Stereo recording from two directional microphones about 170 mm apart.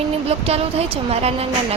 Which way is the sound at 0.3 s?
35° right (ahead or behind).